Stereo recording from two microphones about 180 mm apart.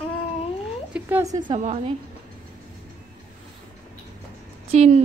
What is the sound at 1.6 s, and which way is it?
Speech, 40° right (ahead or behind).